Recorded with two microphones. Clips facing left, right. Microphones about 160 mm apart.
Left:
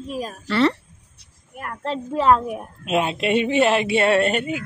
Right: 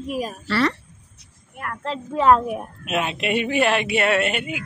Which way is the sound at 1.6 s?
40° left (ahead or behind).